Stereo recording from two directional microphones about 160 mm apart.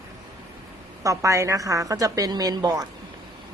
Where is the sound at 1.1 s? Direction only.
20° right (ahead or behind).